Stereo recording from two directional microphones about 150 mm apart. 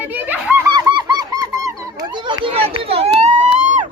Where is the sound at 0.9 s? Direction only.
30° right (ahead or behind).